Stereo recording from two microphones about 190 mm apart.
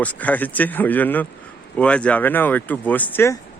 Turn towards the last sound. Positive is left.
turn(degrees=15)  # may be behind; listen again after turning